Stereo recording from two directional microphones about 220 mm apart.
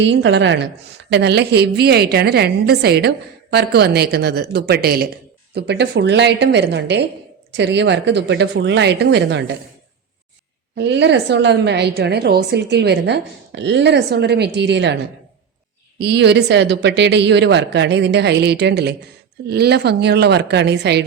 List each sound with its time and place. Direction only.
0.0 s a woman's voice: 50° right (ahead or behind)
10.8 s a woman's voice: 50° right (ahead or behind)
16.0 s a woman's voice: 50° right (ahead or behind)